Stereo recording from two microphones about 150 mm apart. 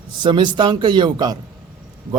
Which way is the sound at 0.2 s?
30° right (ahead or behind).